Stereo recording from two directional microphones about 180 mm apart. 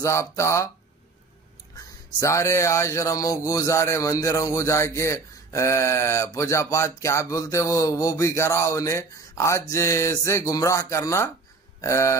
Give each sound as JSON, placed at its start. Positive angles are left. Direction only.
{"t": 0.0, "sound": "speech", "side_deg": 15}
{"t": 2.1, "sound": "speech", "side_deg": 15}